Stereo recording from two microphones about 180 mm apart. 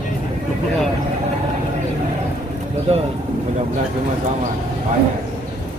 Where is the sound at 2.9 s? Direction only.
35° right (ahead or behind).